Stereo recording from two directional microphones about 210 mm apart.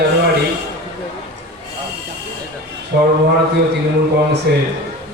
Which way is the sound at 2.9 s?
55° right (ahead or behind).